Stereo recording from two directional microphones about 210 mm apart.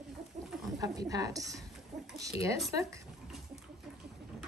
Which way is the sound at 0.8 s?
15° right (ahead or behind).